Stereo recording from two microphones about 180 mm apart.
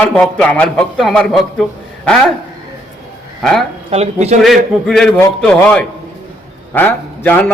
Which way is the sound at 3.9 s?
35° right (ahead or behind).